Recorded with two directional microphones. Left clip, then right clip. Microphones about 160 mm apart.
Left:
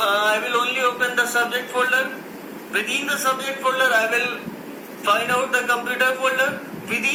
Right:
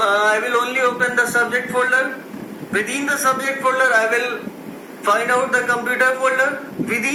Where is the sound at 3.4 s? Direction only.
20° right (ahead or behind).